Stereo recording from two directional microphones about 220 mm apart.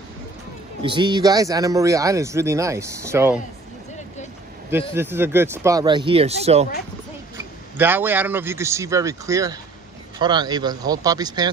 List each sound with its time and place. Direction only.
0.8 s speech: 20° right (ahead or behind)
4.9 s speech: 10° right (ahead or behind); by 6.7 s 30° right (ahead or behind)
7.3 s a man's voice: 10° right (ahead or behind)